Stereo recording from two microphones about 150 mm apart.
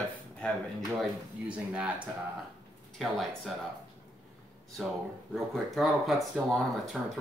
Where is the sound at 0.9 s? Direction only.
5° right (ahead or behind).